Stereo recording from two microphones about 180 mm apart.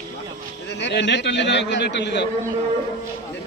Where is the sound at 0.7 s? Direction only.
75° left (ahead or behind).